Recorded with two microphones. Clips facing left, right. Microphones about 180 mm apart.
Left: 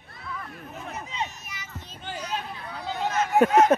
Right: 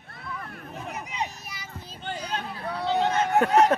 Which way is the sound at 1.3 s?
35° right (ahead or behind).